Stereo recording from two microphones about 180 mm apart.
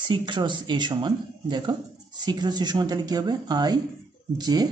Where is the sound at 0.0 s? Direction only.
25° right (ahead or behind).